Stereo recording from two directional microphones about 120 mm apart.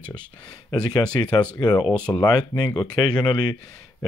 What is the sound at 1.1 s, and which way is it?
Speech, 40° left (ahead or behind).